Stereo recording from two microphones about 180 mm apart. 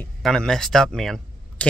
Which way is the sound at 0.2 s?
5° left (ahead or behind).